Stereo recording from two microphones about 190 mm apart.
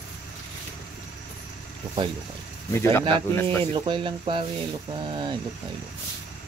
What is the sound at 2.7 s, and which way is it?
Speech, 15° left (ahead or behind).